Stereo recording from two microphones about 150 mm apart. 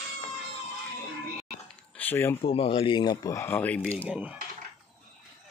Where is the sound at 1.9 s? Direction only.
10° left (ahead or behind).